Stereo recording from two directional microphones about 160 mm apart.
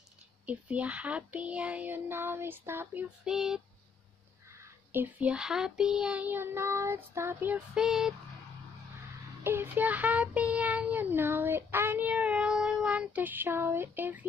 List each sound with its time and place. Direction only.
0.5 s child singing: 10° right (ahead or behind)
4.5 s child singing: 15° right (ahead or behind)
9.4 s child singing: 15° right (ahead or behind)